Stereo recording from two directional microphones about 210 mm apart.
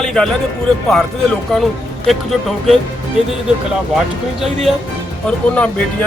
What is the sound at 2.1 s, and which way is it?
Speech, centre (ahead or behind).